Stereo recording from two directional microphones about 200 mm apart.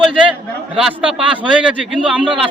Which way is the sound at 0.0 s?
5° right (ahead or behind).